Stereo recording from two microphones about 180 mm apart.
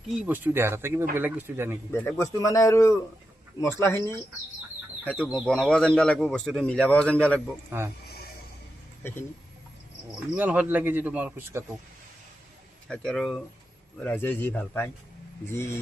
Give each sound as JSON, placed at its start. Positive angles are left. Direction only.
{"t": 0.2, "sound": "speech", "side_deg": -10}
{"t": 1.9, "sound": "a man's voice", "side_deg": 15}
{"t": 5.0, "sound": "a man's voice", "side_deg": 0}
{"t": 7.7, "sound": "speech", "side_deg": -10}
{"t": 10.3, "sound": "speech", "side_deg": -10}
{"t": 12.9, "sound": "a man's voice", "side_deg": 5}